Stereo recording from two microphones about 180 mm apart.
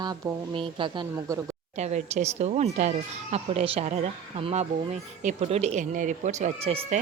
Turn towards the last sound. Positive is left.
turn(degrees=-35)  # may be behind; listen again after turning